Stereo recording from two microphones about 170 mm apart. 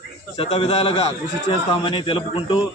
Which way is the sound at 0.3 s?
35° left (ahead or behind).